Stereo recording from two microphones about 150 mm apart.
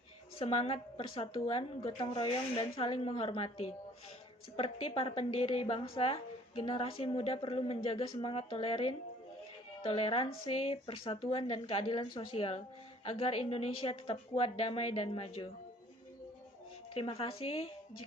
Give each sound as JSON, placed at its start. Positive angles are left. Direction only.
{"t": 0.3, "sound": "a woman's voice", "side_deg": 40}
{"t": 16.9, "sound": "a woman's voice", "side_deg": 40}